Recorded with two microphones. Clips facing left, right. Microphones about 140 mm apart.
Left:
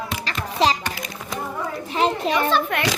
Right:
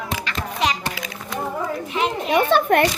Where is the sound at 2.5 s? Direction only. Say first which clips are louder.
Right 6 dB; 50° right (ahead or behind).